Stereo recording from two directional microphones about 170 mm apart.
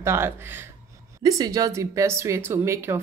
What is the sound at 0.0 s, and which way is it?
A woman's voice, 15° right (ahead or behind).